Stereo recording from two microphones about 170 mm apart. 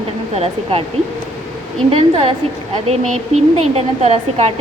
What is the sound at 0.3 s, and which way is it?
Speech, 35° right (ahead or behind).